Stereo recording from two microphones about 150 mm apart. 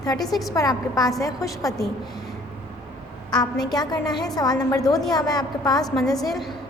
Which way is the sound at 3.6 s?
25° left (ahead or behind).